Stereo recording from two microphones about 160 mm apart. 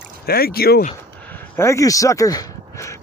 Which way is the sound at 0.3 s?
70° left (ahead or behind).